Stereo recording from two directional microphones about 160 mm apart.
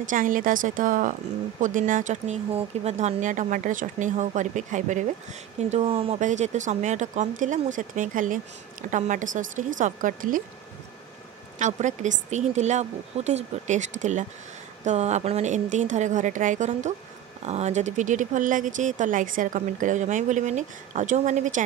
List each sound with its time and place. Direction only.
0.0 s a woman's voice: 55° right (ahead or behind); by 6.2 s 35° right (ahead or behind)
6.2 s speech: 45° right (ahead or behind)
11.5 s speech: 50° right (ahead or behind)